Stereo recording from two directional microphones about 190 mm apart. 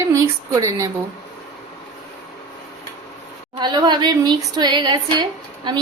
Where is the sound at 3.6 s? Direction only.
20° right (ahead or behind).